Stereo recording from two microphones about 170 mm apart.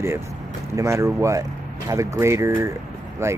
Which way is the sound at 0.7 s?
20° right (ahead or behind).